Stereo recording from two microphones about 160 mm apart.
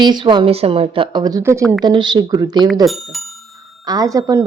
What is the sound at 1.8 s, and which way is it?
Speech, 30° right (ahead or behind).